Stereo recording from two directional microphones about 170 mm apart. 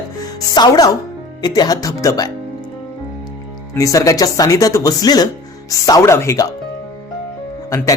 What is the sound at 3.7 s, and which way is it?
Speech, 20° left (ahead or behind).